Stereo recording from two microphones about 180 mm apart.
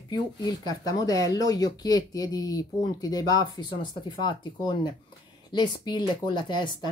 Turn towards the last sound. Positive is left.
turn(degrees=25)  # may be behind; listen again after turning